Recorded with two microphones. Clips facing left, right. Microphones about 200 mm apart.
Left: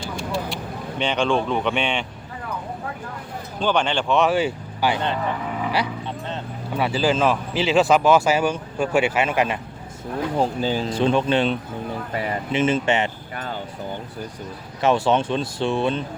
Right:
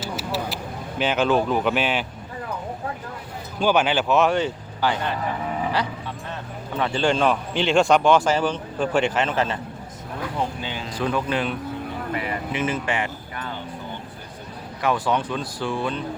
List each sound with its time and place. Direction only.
0.0 s vehicle: 5° right (ahead or behind)
3.6 s speech: 5° right (ahead or behind); by 4.9 s 10° left (ahead or behind)
6.7 s a man's voice: 10° left (ahead or behind)
10.3 s speech: 35° left (ahead or behind)
13.3 s vehicle: 45° left (ahead or behind)
14.8 s speech: 25° left (ahead or behind)